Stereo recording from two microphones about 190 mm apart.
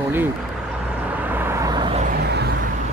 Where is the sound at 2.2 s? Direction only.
60° right (ahead or behind).